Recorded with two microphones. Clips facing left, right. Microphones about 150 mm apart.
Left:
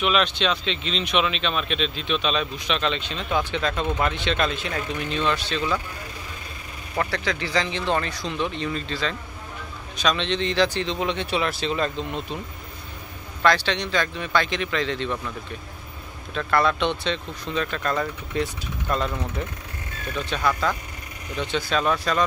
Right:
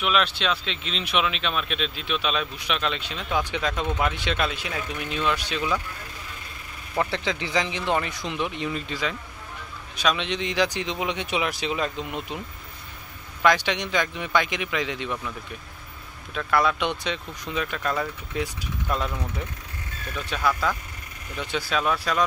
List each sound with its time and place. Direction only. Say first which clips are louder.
0.0 s speech: left 2 dB; 5° right (ahead or behind)
7.0 s speech: even; 20° right (ahead or behind)
13.4 s speech: left 1 dB; 15° right (ahead or behind)
16.3 s speech: left 1 dB; 5° right (ahead or behind)
20.2 s speech: left 1 dB; 5° right (ahead or behind)